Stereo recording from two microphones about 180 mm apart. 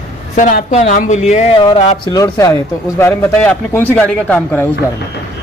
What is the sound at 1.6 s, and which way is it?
A man's voice, 25° left (ahead or behind).